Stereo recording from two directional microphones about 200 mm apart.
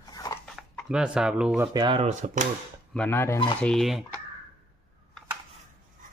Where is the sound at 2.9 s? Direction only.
10° left (ahead or behind).